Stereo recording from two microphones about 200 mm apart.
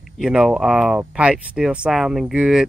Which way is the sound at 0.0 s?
5° right (ahead or behind).